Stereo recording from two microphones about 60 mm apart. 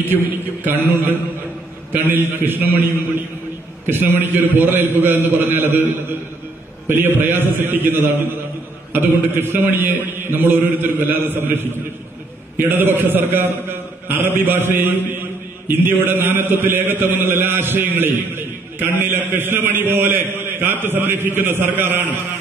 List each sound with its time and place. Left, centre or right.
0.7 s a man's voice: right
3.8 s a man's voice: right